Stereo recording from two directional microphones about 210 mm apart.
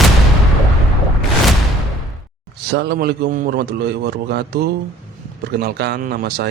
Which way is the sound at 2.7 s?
50° right (ahead or behind).